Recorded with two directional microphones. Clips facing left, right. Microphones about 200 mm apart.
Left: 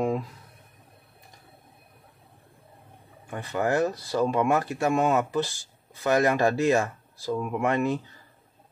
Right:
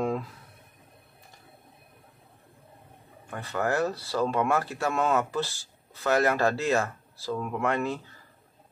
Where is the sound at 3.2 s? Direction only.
15° left (ahead or behind).